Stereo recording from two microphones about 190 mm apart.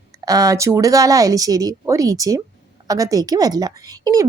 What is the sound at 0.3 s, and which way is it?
A woman's voice, 15° right (ahead or behind).